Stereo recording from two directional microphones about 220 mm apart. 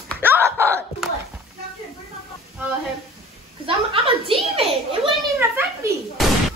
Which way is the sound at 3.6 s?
25° right (ahead or behind).